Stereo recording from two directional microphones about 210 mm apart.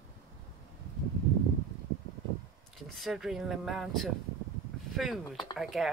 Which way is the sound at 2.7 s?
Centre (ahead or behind).